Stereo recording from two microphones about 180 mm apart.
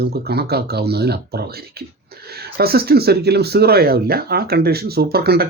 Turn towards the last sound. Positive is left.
turn(degrees=-60)  # may be behind; listen again after turning